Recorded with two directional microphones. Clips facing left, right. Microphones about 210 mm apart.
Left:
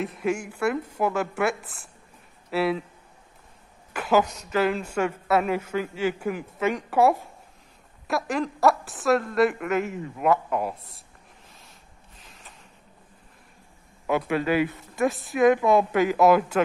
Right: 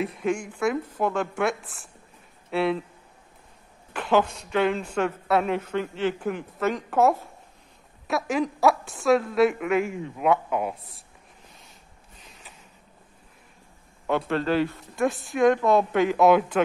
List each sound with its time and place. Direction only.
0.0 s a woman's voice: 5° left (ahead or behind)
3.9 s a woman's voice: 5° left (ahead or behind)
8.1 s a woman's voice: centre (ahead or behind)
12.2 s a sound: centre (ahead or behind)
14.0 s a woman's voice: 10° left (ahead or behind)